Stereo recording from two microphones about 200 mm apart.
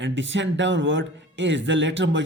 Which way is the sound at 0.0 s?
65° right (ahead or behind).